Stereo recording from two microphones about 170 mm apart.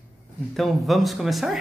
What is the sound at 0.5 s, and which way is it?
Speech, centre (ahead or behind).